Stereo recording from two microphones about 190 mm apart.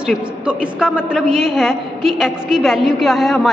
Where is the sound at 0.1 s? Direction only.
5° right (ahead or behind).